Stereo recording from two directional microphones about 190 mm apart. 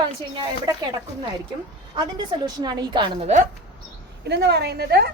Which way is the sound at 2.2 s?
20° right (ahead or behind).